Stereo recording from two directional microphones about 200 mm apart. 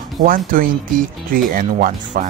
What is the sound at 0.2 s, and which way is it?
Speech, 45° right (ahead or behind).